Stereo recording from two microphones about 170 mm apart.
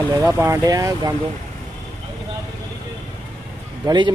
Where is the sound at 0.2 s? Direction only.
15° right (ahead or behind).